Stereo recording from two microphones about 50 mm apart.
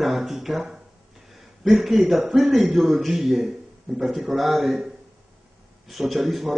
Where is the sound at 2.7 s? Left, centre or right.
Right.